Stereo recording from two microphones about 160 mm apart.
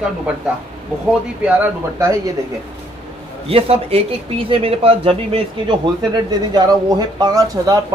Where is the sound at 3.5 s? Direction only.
40° right (ahead or behind).